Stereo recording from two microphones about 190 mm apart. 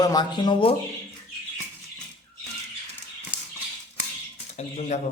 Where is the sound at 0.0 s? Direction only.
20° left (ahead or behind).